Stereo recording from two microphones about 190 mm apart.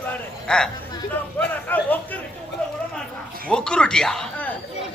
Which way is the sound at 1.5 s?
10° left (ahead or behind).